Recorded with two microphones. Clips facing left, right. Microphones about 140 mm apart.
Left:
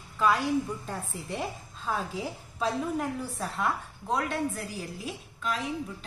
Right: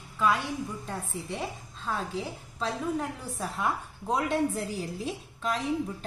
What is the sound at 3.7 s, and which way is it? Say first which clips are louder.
Speech: right 2 dB; 20° right (ahead or behind).